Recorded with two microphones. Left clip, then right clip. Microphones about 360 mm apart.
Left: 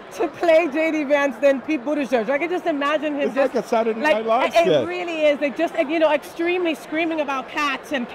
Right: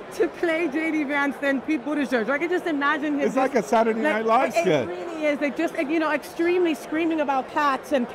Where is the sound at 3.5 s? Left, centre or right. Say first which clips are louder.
Even; right.